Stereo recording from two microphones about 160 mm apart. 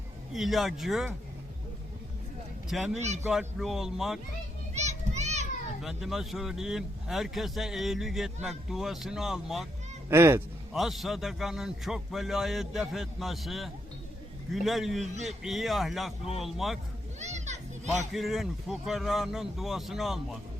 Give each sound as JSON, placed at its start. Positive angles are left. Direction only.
{"t": 0.3, "sound": "speech", "side_deg": 0}
{"t": 2.6, "sound": "speech", "side_deg": 0}
{"t": 4.7, "sound": "children playing", "side_deg": -45}
{"t": 5.8, "sound": "speech", "side_deg": 0}
{"t": 10.1, "sound": "speech", "side_deg": -15}
{"t": 10.7, "sound": "speech", "side_deg": 0}
{"t": 17.2, "sound": "children playing", "side_deg": -45}
{"t": 18.1, "sound": "speech", "side_deg": 0}